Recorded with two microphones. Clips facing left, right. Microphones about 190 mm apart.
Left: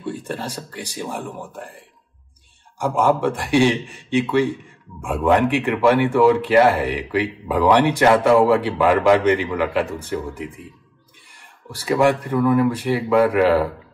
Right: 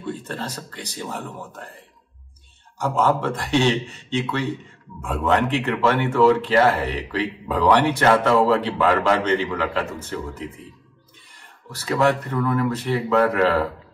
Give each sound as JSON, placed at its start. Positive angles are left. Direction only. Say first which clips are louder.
{"t": 0.0, "sound": "speech", "louder": "left 2 dB", "side_deg": 10}